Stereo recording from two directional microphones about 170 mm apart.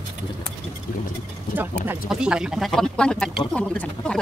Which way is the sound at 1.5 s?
10° right (ahead or behind).